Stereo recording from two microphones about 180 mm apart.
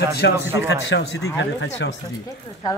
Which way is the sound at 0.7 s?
70° left (ahead or behind).